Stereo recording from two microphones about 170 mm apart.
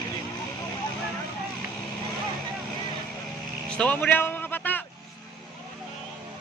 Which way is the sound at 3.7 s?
5° left (ahead or behind).